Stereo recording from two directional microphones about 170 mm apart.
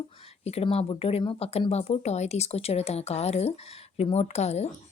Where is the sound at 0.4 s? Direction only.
35° left (ahead or behind).